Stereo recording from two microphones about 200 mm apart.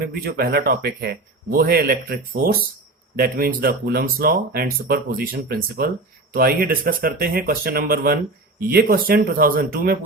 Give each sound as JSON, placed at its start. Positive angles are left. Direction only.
{"t": 0.1, "sound": "speech", "side_deg": -50}